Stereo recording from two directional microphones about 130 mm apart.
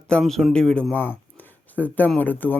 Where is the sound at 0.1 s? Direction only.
5° left (ahead or behind).